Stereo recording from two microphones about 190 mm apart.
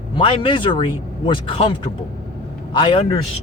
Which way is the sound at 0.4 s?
25° left (ahead or behind).